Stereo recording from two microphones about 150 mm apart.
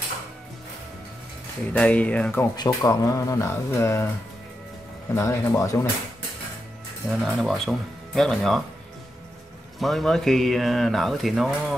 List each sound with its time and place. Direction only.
1.7 s speech: 10° left (ahead or behind)
2.5 s speech: 25° left (ahead or behind)
5.1 s speech: 20° left (ahead or behind)
7.1 s speech: centre (ahead or behind)
9.8 s speech: centre (ahead or behind)